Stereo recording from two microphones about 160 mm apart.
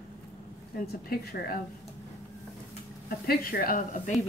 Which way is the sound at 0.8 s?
75° left (ahead or behind).